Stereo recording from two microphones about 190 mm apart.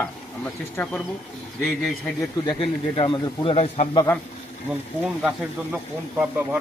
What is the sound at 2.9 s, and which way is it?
A man's voice, 25° left (ahead or behind).